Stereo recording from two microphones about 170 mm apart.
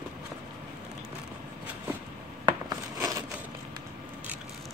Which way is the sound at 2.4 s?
20° right (ahead or behind).